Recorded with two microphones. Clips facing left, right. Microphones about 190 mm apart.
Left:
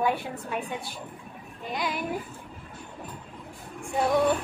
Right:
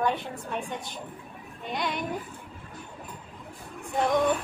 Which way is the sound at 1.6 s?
Centre (ahead or behind).